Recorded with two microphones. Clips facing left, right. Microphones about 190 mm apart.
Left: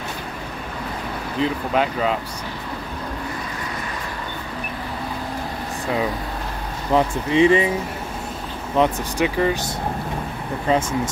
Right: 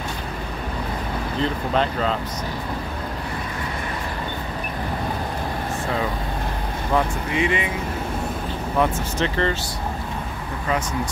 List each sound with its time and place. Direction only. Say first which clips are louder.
1.4 s speech: left 2 dB; 10° left (ahead or behind)
6.9 s speech: left 4 dB; 30° left (ahead or behind)
8.7 s speech: left 3 dB; 15° left (ahead or behind)
10.7 s speech: left 5 dB; 30° left (ahead or behind)